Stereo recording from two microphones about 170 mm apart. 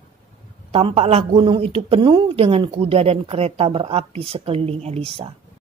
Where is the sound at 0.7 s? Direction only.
35° right (ahead or behind).